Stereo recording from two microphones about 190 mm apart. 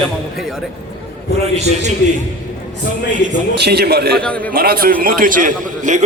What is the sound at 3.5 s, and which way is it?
Speech, 60° right (ahead or behind).